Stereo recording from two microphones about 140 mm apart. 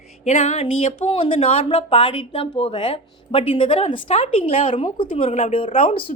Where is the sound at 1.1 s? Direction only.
40° left (ahead or behind).